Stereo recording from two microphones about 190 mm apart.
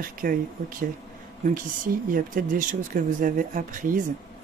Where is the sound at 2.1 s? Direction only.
45° right (ahead or behind).